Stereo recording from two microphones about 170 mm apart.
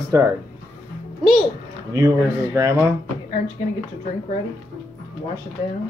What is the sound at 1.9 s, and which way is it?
Speech, 15° right (ahead or behind).